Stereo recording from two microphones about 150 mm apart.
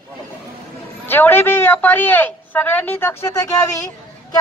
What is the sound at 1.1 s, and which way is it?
A man's voice, 15° left (ahead or behind).